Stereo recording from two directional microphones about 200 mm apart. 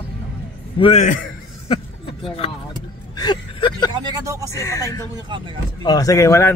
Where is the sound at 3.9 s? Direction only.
20° right (ahead or behind).